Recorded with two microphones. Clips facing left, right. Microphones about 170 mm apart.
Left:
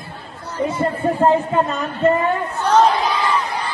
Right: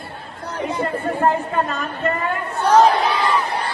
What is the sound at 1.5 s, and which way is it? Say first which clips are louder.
Speech: left 3 dB; 15° left (ahead or behind).